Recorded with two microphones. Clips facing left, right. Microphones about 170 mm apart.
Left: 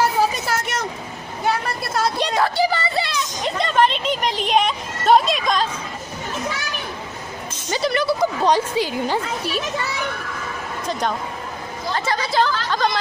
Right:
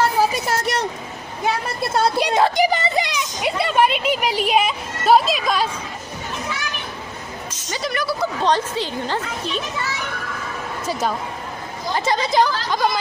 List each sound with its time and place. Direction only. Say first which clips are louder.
0.5 s vehicle: right 2 dB; 30° right (ahead or behind)
2.1 s a woman's voice: right 2 dB; 10° right (ahead or behind)
7.7 s speech: left 4 dB; 25° left (ahead or behind)
8.4 s a woman's voice: left 2 dB; 10° left (ahead or behind)
10.9 s speech: right 1 dB; 5° right (ahead or behind)
11.9 s a woman's voice: right 3 dB; 20° right (ahead or behind)